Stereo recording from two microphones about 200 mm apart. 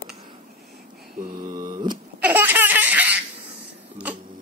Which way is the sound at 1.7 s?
20° right (ahead or behind).